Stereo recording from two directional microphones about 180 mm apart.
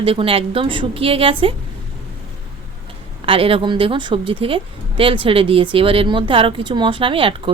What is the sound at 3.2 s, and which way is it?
Speech, 30° right (ahead or behind).